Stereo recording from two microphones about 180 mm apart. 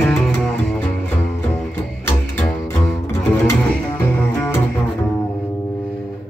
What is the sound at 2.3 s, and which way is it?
Cello, 15° left (ahead or behind).